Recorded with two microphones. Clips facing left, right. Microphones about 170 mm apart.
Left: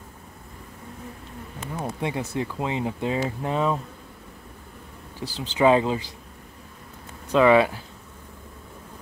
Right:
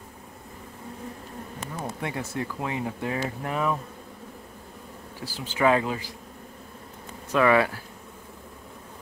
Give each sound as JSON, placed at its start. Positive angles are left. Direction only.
{"t": 2.0, "sound": "speech", "side_deg": 20}
{"t": 5.2, "sound": "speech", "side_deg": 20}
{"t": 7.3, "sound": "speech", "side_deg": 20}